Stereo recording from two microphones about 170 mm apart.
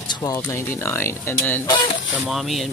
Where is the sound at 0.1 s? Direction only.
20° left (ahead or behind).